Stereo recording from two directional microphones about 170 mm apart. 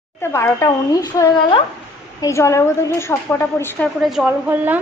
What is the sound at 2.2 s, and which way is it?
Speech, 15° left (ahead or behind).